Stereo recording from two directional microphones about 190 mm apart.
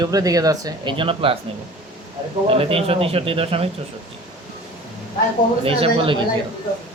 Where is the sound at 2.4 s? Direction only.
30° right (ahead or behind).